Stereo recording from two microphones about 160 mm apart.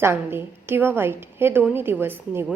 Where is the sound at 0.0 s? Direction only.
15° right (ahead or behind).